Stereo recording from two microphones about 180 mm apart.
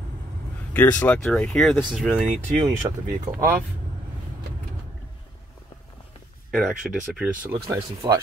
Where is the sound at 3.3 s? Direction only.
15° right (ahead or behind).